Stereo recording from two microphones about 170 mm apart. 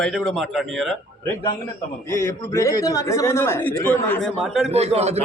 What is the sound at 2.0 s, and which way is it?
A man's voice, 15° left (ahead or behind).